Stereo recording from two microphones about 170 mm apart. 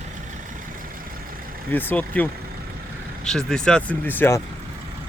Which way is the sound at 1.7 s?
10° left (ahead or behind).